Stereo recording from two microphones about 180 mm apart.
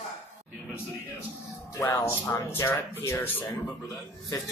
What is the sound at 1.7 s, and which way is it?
Speech, 15° left (ahead or behind).